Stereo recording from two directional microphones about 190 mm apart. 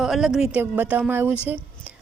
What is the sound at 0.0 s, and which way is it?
A woman's voice, centre (ahead or behind).